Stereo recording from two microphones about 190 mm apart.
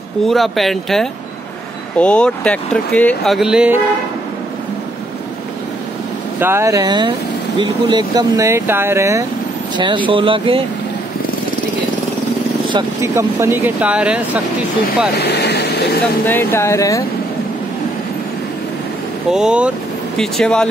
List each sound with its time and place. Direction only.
0.3 s speech: centre (ahead or behind)
6.4 s speech: 15° right (ahead or behind)
9.8 s speech: 25° right (ahead or behind)
12.6 s speech: 25° right (ahead or behind)
13.1 s speech: 15° right (ahead or behind)
15.1 s speech: 60° left (ahead or behind)
16.3 s speech: 10° left (ahead or behind)
19.3 s speech: 5° right (ahead or behind)